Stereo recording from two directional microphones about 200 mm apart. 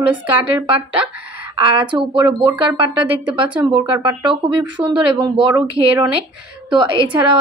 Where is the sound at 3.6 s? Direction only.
15° right (ahead or behind).